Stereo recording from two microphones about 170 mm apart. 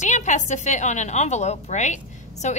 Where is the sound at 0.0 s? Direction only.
45° left (ahead or behind).